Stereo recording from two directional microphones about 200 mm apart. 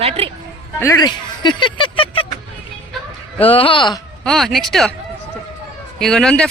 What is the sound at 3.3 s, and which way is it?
Speech, 25° left (ahead or behind).